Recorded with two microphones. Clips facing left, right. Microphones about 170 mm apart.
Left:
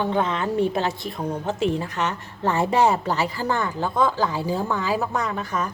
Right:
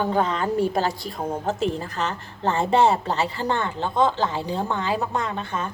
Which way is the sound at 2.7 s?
30° right (ahead or behind).